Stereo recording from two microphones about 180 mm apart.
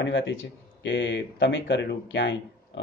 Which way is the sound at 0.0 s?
90° left.